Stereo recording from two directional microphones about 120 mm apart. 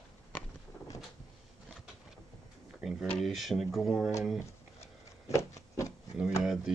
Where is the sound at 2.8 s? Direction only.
Centre (ahead or behind).